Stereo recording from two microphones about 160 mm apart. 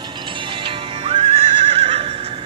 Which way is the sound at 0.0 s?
30° right (ahead or behind).